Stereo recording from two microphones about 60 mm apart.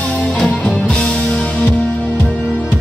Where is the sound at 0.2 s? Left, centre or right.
Centre.